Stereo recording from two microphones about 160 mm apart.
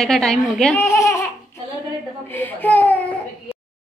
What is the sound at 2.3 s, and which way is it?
Speech, 10° left (ahead or behind).